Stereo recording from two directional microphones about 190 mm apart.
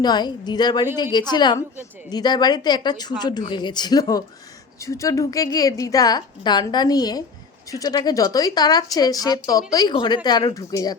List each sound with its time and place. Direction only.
0.0 s a woman's voice: 20° left (ahead or behind)